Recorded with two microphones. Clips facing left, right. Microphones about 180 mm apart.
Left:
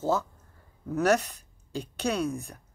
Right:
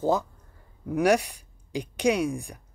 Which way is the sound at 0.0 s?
15° right (ahead or behind).